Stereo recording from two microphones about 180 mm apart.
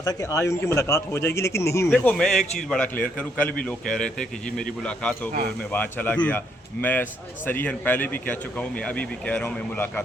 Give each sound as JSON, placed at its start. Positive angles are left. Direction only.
{"t": 0.0, "sound": "speech", "side_deg": 20}
{"t": 2.0, "sound": "a man's voice", "side_deg": 5}